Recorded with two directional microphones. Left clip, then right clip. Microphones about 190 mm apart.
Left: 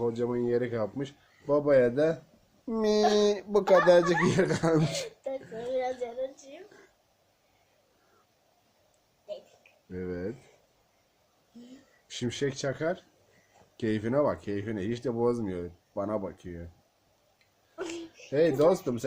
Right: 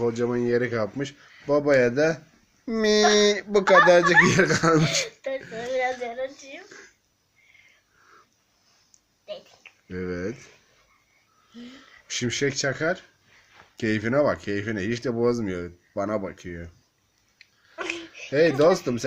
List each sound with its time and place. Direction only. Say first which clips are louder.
0.0 s speech: right 5 dB; 10° right (ahead or behind); by 4.3 s 10° left (ahead or behind)
4.3 s speech: right 6 dB; 5° right (ahead or behind)
5.5 s a sound: right 4 dB; centre (ahead or behind)
9.9 s speech: right 5 dB; 10° right (ahead or behind)
12.0 s speech: right 6 dB; 5° right (ahead or behind)
17.7 s a sound: right 6 dB; 50° left (ahead or behind)
18.3 s speech: right 5 dB; 5° right (ahead or behind)